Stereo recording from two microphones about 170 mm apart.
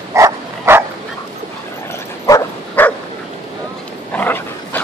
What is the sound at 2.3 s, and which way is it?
Dog, 15° left (ahead or behind).